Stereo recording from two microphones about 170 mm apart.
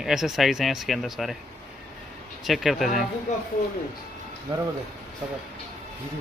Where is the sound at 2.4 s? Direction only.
Centre (ahead or behind).